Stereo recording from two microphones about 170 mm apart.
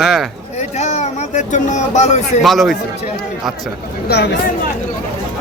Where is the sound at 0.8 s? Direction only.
40° left (ahead or behind).